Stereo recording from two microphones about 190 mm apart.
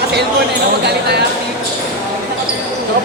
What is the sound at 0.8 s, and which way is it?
Speech, 60° right (ahead or behind).